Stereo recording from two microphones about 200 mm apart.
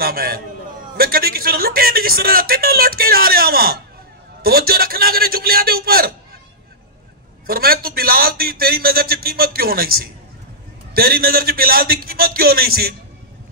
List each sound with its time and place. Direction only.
0.0 s a sound: 50° right (ahead or behind)
0.9 s speech: 50° right (ahead or behind)
7.4 s speech: 50° right (ahead or behind)